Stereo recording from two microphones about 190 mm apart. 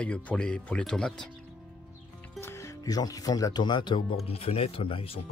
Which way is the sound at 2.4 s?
15° left (ahead or behind).